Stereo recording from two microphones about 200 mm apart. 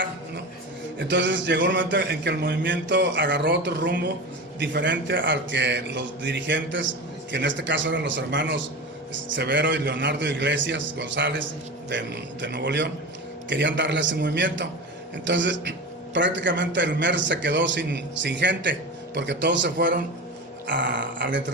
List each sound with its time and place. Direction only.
0.9 s a man's voice: 60° right (ahead or behind)
20.9 s a man's voice: 65° right (ahead or behind)